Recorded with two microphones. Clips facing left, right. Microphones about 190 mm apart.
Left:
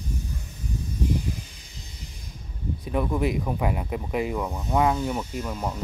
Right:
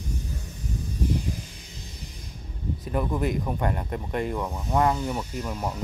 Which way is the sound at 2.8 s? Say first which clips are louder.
Left 2 dB; centre (ahead or behind).